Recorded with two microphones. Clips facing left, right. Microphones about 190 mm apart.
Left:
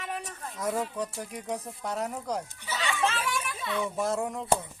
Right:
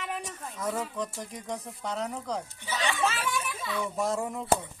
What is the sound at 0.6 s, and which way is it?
Speech, 5° left (ahead or behind).